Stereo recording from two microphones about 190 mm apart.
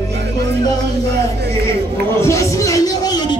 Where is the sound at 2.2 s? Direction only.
15° left (ahead or behind).